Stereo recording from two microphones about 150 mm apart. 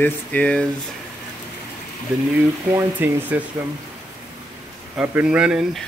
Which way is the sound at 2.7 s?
15° right (ahead or behind).